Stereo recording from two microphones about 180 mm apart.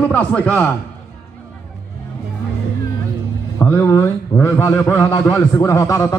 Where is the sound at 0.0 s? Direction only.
5° left (ahead or behind).